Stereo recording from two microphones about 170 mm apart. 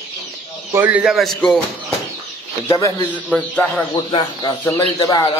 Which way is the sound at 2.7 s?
20° left (ahead or behind).